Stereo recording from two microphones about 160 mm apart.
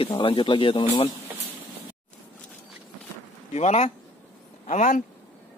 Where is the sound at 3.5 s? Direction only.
45° left (ahead or behind).